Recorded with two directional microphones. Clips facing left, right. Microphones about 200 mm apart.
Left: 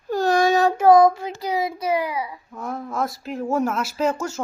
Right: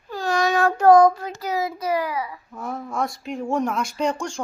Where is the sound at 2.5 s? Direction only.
Centre (ahead or behind).